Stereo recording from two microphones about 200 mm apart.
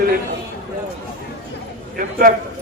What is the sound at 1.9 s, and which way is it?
Speech, 45° right (ahead or behind).